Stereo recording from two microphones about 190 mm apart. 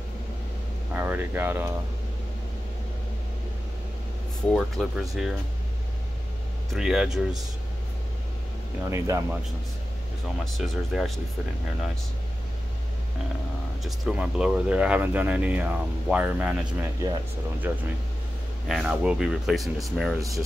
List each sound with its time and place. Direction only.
0.9 s speech: 10° right (ahead or behind)
4.5 s speech: centre (ahead or behind)
6.7 s speech: centre (ahead or behind)
8.9 s speech: 15° right (ahead or behind)
10.4 s speech: centre (ahead or behind)
13.8 s speech: 5° right (ahead or behind)
20.2 s speech: 15° right (ahead or behind)